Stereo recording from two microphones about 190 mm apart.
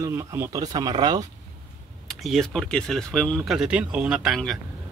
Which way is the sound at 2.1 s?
Centre (ahead or behind).